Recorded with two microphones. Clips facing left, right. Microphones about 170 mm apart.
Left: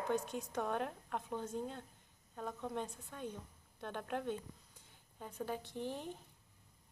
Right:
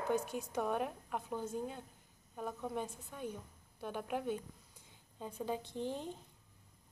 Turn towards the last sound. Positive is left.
turn(degrees=-20)  # may be behind; listen again after turning